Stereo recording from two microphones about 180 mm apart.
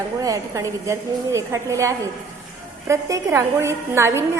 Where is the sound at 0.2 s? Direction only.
20° right (ahead or behind).